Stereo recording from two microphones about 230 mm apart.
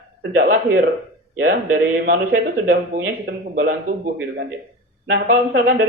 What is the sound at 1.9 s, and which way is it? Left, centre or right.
Speech, right.